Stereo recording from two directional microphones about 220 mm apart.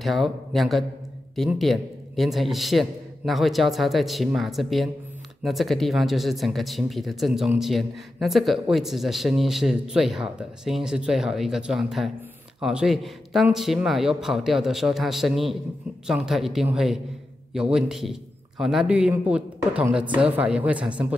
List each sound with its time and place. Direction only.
0.0 s speech: centre (ahead or behind)